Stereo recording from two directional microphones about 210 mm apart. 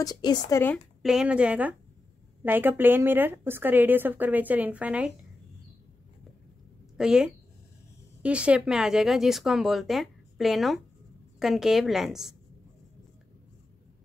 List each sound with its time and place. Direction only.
0.0 s speech: 20° left (ahead or behind)
1.0 s a woman's voice: 5° right (ahead or behind)
7.0 s speech: 5° right (ahead or behind)